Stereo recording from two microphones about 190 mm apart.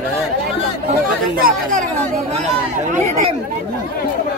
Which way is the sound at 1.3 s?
45° right (ahead or behind).